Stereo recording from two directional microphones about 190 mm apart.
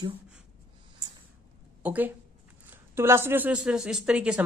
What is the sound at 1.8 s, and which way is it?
Speech, 10° right (ahead or behind).